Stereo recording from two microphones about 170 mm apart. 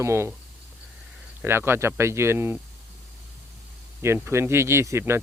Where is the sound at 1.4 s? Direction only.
15° right (ahead or behind).